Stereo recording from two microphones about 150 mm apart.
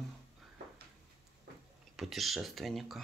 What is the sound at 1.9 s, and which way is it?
Speech, centre (ahead or behind).